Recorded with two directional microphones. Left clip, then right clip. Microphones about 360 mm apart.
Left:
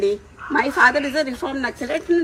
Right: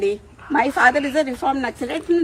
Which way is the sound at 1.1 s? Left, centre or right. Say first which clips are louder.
Right 3 dB; centre.